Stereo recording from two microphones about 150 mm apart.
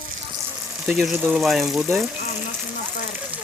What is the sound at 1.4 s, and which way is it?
Speech, centre (ahead or behind).